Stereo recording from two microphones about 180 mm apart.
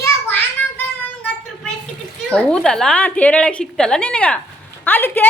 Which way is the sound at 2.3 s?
5° left (ahead or behind).